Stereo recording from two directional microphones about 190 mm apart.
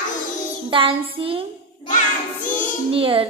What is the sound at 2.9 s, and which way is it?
Speech, 30° right (ahead or behind).